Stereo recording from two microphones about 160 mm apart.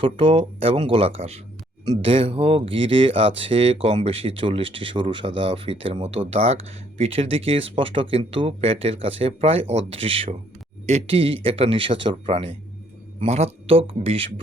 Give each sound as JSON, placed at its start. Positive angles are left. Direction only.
{"t": 0.0, "sound": "speech", "side_deg": -35}